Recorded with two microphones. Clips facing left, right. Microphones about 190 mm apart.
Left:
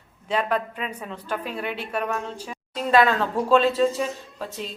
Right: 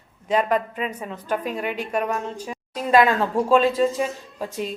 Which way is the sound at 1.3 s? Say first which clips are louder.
Right 4 dB; 45° right (ahead or behind).